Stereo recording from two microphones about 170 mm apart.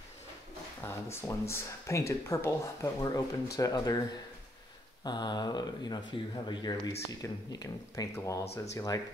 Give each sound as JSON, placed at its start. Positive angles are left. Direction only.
{"t": 0.8, "sound": "speech", "side_deg": 15}
{"t": 5.0, "sound": "speech", "side_deg": 25}